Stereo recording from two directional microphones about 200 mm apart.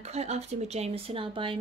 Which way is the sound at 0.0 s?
30° right (ahead or behind).